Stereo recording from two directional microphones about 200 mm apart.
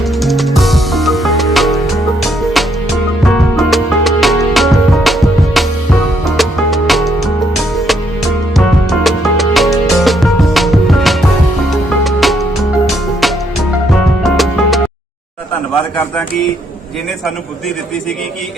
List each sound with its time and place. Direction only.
0.2 s music: centre (ahead or behind)
8.5 s music: centre (ahead or behind)